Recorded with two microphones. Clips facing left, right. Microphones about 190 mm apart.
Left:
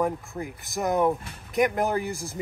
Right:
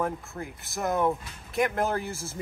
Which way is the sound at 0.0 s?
15° left (ahead or behind).